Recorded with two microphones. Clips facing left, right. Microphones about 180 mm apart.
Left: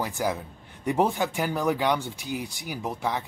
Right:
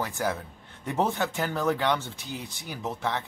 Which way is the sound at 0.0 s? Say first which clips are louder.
Left 2 dB; 15° left (ahead or behind).